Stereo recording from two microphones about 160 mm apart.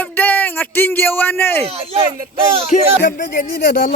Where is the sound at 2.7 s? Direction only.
45° left (ahead or behind).